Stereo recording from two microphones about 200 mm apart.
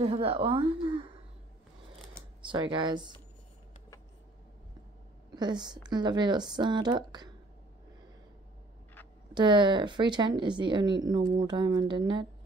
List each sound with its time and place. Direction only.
0.0 s speech: 30° right (ahead or behind)
2.4 s speech: 25° right (ahead or behind)
5.3 s speech: 20° right (ahead or behind)
9.3 s speech: 25° right (ahead or behind)